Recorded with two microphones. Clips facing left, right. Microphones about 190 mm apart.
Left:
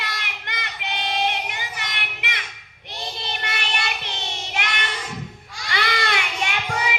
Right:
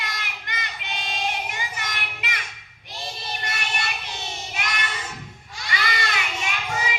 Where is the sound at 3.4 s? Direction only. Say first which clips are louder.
Left 2 dB; 65° left (ahead or behind).